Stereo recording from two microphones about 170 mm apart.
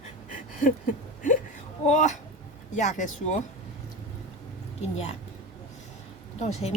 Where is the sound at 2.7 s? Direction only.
45° left (ahead or behind).